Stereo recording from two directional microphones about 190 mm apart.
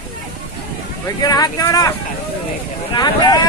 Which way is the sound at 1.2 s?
20° left (ahead or behind).